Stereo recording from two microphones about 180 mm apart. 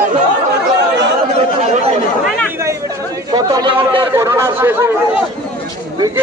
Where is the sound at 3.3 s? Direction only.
20° right (ahead or behind).